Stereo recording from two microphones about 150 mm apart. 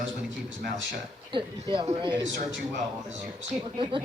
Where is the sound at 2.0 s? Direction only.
30° right (ahead or behind).